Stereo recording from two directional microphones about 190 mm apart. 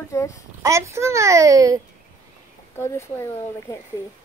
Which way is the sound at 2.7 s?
15° left (ahead or behind).